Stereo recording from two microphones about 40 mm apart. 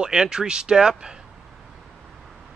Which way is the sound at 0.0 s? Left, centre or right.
Centre.